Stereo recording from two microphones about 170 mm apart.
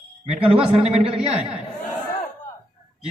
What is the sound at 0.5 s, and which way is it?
Speech, 35° right (ahead or behind).